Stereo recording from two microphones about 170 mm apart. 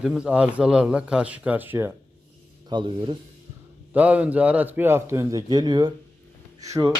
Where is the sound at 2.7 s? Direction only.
30° right (ahead or behind).